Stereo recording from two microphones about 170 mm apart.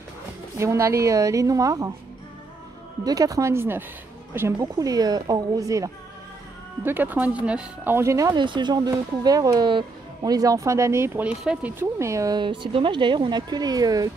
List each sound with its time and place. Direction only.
0.6 s speech: 15° right (ahead or behind)
3.1 s speech: 20° right (ahead or behind)